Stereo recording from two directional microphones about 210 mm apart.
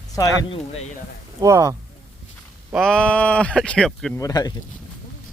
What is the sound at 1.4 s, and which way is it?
Speech, 15° right (ahead or behind).